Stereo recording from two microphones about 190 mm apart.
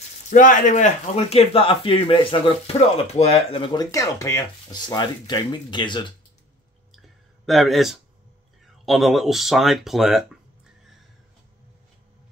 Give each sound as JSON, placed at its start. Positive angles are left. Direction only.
{"t": 0.3, "sound": "speech", "side_deg": 45}
{"t": 7.4, "sound": "speech", "side_deg": 0}